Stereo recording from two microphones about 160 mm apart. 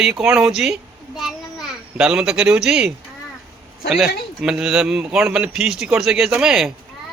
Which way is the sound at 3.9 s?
5° right (ahead or behind).